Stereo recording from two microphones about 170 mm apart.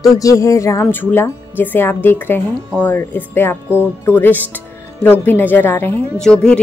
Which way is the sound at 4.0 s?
10° left (ahead or behind).